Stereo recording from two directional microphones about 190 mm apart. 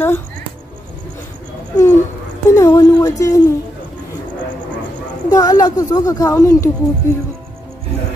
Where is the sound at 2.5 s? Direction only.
15° left (ahead or behind).